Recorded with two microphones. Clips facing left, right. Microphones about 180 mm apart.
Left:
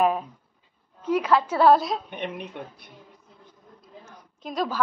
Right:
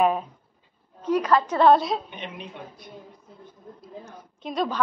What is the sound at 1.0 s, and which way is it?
Speech, 10° left (ahead or behind).